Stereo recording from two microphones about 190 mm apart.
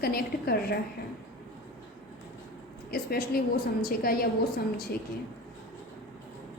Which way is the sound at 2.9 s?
50° left (ahead or behind).